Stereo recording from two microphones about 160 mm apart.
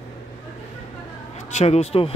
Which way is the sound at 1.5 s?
40° left (ahead or behind).